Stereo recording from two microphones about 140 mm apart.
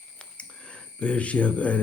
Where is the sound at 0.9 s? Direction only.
10° left (ahead or behind).